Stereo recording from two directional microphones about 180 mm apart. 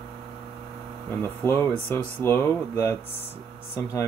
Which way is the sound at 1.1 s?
15° left (ahead or behind).